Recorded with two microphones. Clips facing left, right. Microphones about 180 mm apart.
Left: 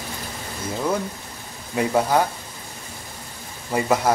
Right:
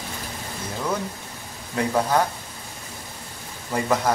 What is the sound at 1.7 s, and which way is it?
Speech, 10° left (ahead or behind).